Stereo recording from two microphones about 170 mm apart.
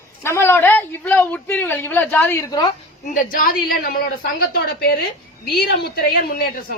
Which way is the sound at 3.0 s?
50° left (ahead or behind).